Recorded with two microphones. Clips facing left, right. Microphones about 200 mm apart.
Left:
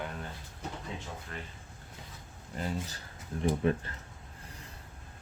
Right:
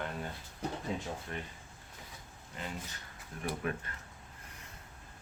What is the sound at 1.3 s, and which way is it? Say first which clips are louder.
Speech: even; 25° right (ahead or behind).